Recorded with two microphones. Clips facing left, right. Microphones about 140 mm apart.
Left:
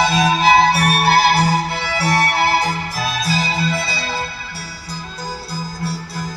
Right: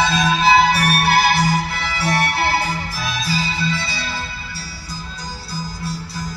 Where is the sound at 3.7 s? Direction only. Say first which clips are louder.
Left 3 dB; 50° left (ahead or behind).